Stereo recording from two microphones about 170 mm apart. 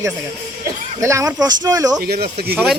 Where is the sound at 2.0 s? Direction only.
70° right (ahead or behind).